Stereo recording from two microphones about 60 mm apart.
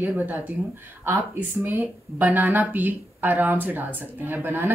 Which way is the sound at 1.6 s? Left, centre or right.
Right.